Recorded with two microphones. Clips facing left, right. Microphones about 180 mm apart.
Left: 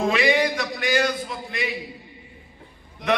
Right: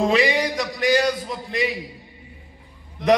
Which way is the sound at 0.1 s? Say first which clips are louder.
Right 1 dB; 40° right (ahead or behind).